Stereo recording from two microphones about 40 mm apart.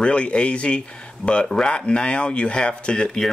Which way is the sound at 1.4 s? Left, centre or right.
Centre.